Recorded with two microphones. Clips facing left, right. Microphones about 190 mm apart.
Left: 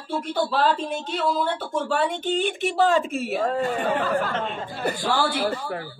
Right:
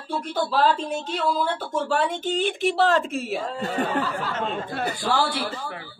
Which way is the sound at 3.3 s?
50° left (ahead or behind).